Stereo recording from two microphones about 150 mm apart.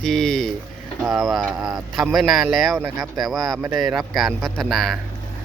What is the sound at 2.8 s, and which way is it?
Speech, 25° right (ahead or behind).